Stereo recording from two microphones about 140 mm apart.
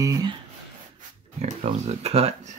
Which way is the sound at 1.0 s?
55° right (ahead or behind).